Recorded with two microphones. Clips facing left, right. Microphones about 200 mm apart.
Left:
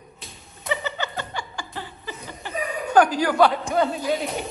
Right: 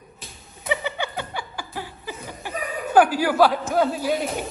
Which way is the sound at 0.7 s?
10° right (ahead or behind).